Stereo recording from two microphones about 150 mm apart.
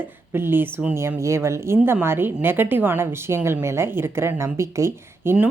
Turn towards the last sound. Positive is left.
turn(degrees=-15)  # may be behind; listen again after turning